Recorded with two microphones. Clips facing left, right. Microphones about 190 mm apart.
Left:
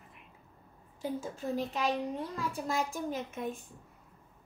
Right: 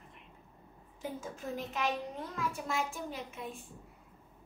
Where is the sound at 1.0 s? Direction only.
30° left (ahead or behind).